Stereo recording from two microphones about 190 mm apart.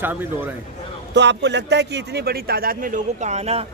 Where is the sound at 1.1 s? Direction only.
65° right (ahead or behind); by 3.6 s 35° right (ahead or behind).